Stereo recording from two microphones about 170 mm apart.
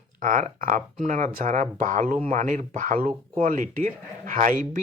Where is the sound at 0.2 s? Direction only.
50° right (ahead or behind).